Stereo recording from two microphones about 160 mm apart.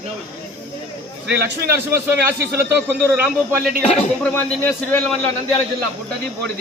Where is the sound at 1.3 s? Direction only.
15° right (ahead or behind).